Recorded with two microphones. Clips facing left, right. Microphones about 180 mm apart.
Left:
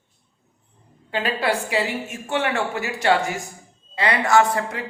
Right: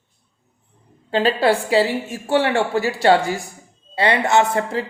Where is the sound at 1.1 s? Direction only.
30° right (ahead or behind).